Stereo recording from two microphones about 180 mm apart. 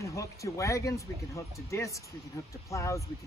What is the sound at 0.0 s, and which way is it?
Speech, 15° left (ahead or behind).